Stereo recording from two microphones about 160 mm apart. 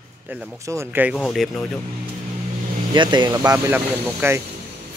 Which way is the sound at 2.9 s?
30° right (ahead or behind).